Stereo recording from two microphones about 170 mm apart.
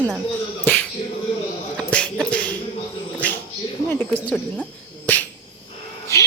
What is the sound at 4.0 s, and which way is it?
Speech, centre (ahead or behind).